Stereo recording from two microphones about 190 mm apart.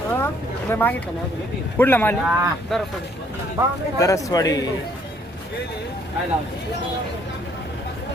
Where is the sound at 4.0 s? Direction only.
15° left (ahead or behind).